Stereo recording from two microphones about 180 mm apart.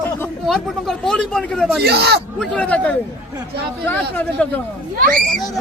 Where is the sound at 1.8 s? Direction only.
65° right (ahead or behind).